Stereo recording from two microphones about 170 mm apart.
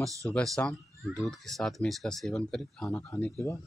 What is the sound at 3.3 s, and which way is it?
Speech, 15° left (ahead or behind).